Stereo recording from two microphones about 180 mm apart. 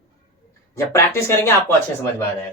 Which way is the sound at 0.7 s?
15° left (ahead or behind).